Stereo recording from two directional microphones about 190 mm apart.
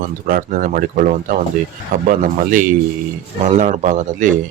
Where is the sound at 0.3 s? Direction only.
50° right (ahead or behind).